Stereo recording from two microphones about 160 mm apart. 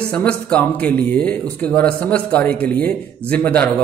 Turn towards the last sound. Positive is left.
turn(degrees=10)  # may be behind; listen again after turning